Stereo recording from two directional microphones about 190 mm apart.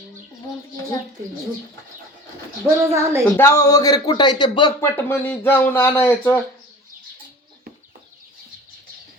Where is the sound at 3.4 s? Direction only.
15° left (ahead or behind).